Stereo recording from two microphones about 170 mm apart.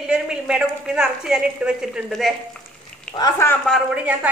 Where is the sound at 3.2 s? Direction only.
15° left (ahead or behind).